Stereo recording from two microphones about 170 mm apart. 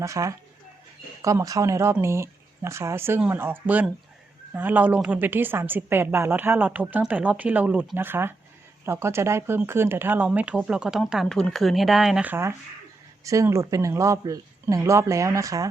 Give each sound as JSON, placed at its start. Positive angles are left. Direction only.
{"t": 0.0, "sound": "a woman's voice", "side_deg": -20}